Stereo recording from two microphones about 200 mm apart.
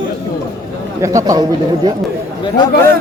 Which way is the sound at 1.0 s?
15° right (ahead or behind).